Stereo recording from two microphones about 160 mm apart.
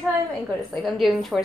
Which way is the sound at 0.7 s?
Centre (ahead or behind).